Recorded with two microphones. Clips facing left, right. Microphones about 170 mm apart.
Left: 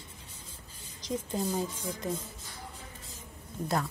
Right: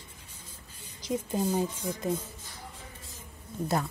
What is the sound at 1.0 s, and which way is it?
Speech, 10° right (ahead or behind).